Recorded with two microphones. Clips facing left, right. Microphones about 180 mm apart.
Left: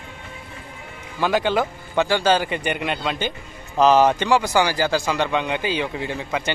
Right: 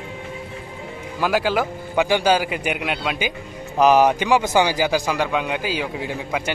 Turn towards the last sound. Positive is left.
turn(degrees=-10)  # may be behind; listen again after turning